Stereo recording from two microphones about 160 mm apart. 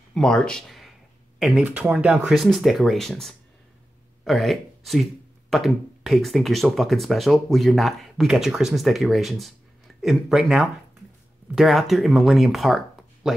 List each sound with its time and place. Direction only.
0.1 s speech: 5° left (ahead or behind)